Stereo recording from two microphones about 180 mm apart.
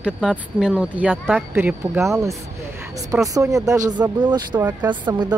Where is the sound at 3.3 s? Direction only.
20° right (ahead or behind).